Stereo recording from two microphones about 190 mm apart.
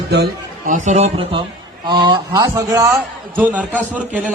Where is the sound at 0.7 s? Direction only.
35° right (ahead or behind).